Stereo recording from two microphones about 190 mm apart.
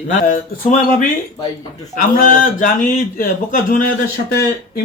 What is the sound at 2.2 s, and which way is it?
Speech, 45° left (ahead or behind).